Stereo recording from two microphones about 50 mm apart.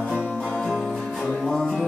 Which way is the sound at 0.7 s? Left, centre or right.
Centre.